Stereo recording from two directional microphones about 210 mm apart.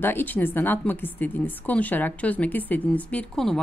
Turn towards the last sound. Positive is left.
turn(degrees=5)  # may be behind; listen again after turning